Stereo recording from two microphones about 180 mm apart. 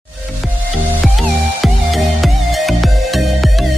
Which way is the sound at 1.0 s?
Centre (ahead or behind).